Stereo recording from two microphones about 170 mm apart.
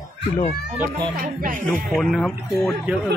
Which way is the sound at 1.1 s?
55° right (ahead or behind).